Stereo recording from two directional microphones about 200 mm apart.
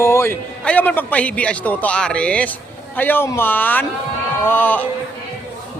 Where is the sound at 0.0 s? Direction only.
10° left (ahead or behind).